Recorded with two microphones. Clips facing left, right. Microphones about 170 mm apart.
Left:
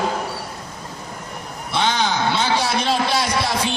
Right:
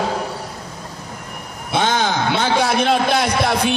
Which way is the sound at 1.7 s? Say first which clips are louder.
Right 2 dB; 50° right (ahead or behind).